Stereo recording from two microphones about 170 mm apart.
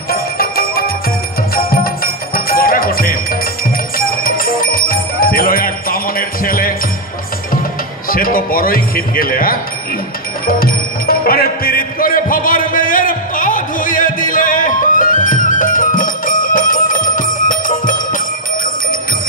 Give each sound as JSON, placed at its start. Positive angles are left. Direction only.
{"t": 0.1, "sound": "bell", "side_deg": 60}
{"t": 1.5, "sound": "music", "side_deg": 60}
{"t": 4.2, "sound": "bell", "side_deg": 55}
{"t": 8.1, "sound": "a man's voice", "side_deg": 60}
{"t": 10.4, "sound": "music", "side_deg": 60}